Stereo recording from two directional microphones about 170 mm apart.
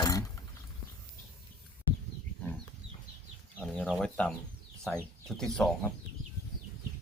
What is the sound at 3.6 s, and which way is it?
Chicken, 5° left (ahead or behind).